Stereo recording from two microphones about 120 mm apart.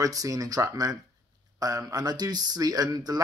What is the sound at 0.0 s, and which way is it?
Speech, 30° right (ahead or behind).